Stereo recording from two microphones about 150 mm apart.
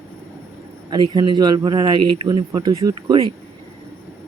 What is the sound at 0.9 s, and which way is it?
Speech, 30° right (ahead or behind).